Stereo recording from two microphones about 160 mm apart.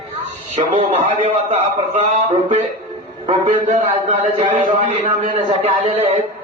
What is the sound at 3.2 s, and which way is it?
A man's voice, 45° right (ahead or behind).